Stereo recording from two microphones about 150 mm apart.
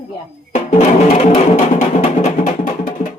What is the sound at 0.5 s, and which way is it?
Music, 55° left (ahead or behind).